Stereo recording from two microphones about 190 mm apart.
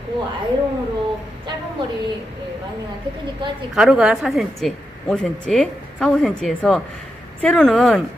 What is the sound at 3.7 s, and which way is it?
A woman's voice, 5° right (ahead or behind).